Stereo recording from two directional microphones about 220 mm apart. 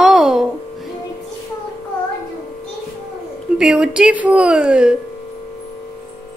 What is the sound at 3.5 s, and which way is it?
A woman's voice, 5° right (ahead or behind).